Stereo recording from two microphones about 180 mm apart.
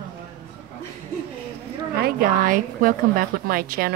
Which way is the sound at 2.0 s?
55° right (ahead or behind).